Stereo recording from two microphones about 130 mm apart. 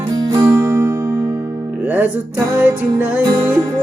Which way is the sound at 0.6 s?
20° right (ahead or behind).